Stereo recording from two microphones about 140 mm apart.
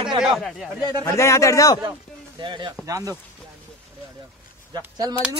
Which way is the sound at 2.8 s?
25° right (ahead or behind).